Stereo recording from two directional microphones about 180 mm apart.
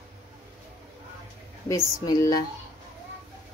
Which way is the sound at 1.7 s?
20° left (ahead or behind).